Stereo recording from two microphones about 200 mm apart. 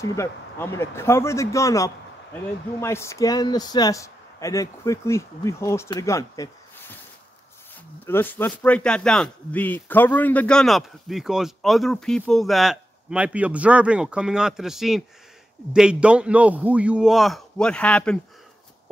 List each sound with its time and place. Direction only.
0.0 s speech: 15° left (ahead or behind)
8.1 s speech: 10° left (ahead or behind)